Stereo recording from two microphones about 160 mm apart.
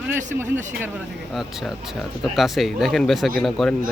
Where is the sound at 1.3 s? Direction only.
Centre (ahead or behind).